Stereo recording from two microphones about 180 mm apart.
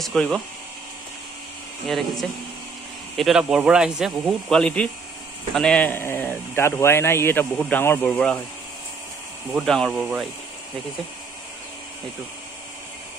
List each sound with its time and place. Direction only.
0.0 s speech: centre (ahead or behind)
1.9 s a man's voice: centre (ahead or behind)
9.5 s speech: centre (ahead or behind)